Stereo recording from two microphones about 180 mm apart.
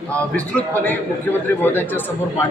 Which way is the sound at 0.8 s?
10° left (ahead or behind).